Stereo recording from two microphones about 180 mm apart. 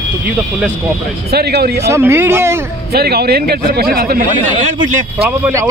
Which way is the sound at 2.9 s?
60° right (ahead or behind).